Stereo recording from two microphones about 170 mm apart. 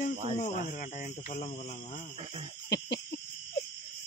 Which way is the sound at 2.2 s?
35° right (ahead or behind).